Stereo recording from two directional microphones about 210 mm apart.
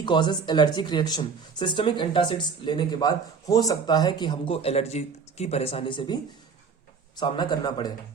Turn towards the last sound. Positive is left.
turn(degrees=20)  # may be behind; listen again after turning